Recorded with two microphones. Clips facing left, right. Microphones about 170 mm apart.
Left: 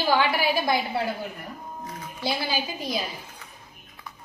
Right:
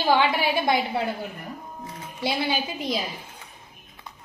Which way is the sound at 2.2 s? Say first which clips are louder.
Right 2 dB; 25° right (ahead or behind).